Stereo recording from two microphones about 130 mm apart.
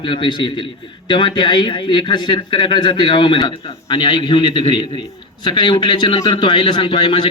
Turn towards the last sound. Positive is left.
turn(degrees=40)  # may be behind; listen again after turning